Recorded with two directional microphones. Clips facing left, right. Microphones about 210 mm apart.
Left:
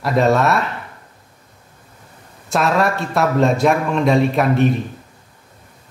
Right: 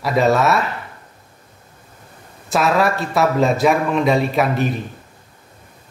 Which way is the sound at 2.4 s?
Centre (ahead or behind).